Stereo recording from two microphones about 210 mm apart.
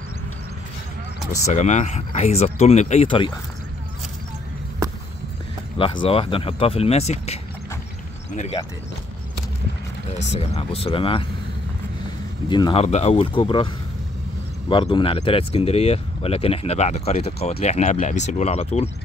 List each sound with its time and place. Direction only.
1.4 s speech: 35° left (ahead or behind)
5.8 s speech: 25° left (ahead or behind)
10.3 s speech: 30° left (ahead or behind)
12.4 s speech: 20° left (ahead or behind)
14.7 s speech: 25° left (ahead or behind)